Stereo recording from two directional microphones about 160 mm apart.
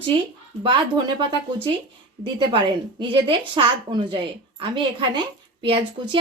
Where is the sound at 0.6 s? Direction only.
30° right (ahead or behind).